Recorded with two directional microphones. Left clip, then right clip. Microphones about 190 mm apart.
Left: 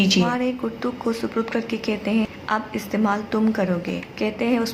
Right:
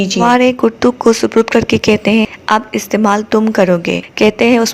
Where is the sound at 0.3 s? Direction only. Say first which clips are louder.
Right 14 dB; 45° right (ahead or behind).